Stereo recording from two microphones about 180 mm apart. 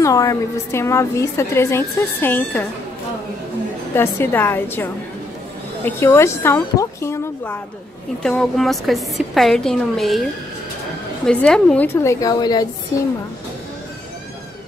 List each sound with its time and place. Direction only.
0.0 s a woman's voice: 20° left (ahead or behind)
3.9 s a woman's voice: 15° left (ahead or behind)
5.9 s a woman's voice: 15° left (ahead or behind)
8.2 s a woman's voice: 5° left (ahead or behind)
11.2 s a woman's voice: 5° left (ahead or behind); by 12.6 s 20° left (ahead or behind)